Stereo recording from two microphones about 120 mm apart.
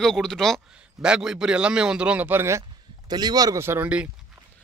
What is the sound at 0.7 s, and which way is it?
A man's voice, 10° right (ahead or behind).